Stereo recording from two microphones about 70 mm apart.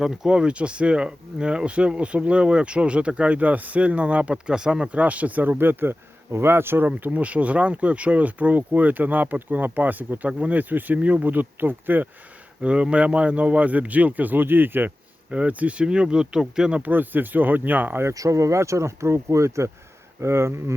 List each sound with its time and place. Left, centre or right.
0.0 s speech: centre; by 6.9 s right
6.9 s speech: right
12.6 s speech: centre
16.8 s speech: right
18.1 s speech: right